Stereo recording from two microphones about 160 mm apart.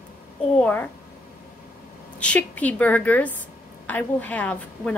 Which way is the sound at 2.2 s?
10° left (ahead or behind).